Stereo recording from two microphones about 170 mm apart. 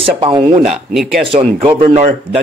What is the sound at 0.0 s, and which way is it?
Speech, 30° right (ahead or behind).